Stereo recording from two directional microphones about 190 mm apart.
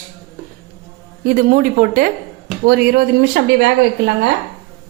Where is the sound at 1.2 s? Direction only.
45° right (ahead or behind).